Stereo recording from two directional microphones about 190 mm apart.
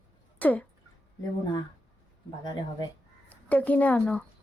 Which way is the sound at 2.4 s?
20° left (ahead or behind).